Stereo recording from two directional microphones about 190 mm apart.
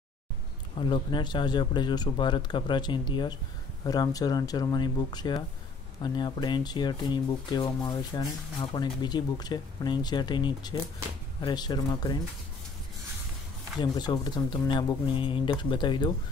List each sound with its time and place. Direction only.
0.7 s speech: 25° left (ahead or behind)
13.7 s speech: 20° left (ahead or behind)